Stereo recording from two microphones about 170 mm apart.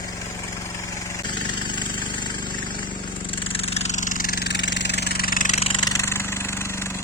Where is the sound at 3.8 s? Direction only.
45° left (ahead or behind).